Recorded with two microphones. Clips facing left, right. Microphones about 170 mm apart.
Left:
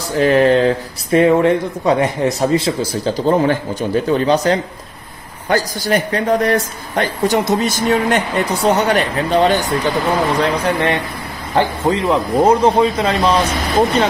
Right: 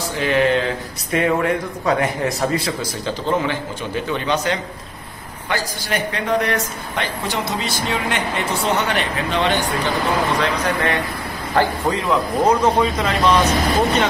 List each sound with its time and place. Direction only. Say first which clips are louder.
0.2 s speech: left 6 dB; 40° left (ahead or behind)
10.4 s speech: left 4 dB; 30° left (ahead or behind)